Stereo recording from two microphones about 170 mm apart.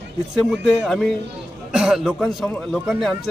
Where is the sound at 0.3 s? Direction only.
Centre (ahead or behind).